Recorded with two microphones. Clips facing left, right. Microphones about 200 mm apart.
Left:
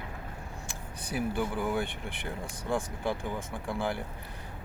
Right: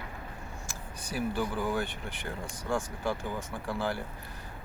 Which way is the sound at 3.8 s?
15° left (ahead or behind).